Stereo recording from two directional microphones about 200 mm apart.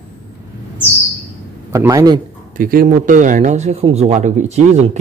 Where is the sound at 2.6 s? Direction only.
45° right (ahead or behind).